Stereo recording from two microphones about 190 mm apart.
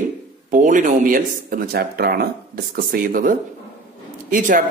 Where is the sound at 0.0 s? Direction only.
45° right (ahead or behind).